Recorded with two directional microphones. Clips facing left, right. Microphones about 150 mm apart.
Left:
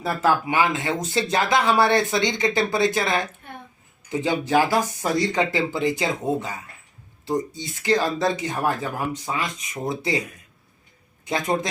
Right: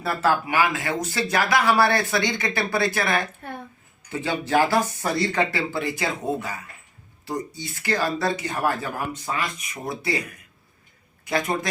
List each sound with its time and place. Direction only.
0.0 s speech: 20° left (ahead or behind)
11.3 s speech: 20° left (ahead or behind)